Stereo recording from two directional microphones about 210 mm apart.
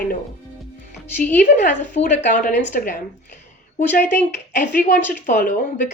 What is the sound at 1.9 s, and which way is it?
Speech, 35° left (ahead or behind).